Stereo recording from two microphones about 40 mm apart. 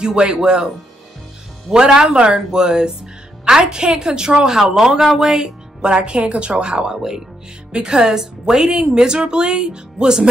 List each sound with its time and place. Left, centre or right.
0.0 s speech: right
1.7 s a woman's voice: centre
5.8 s speech: right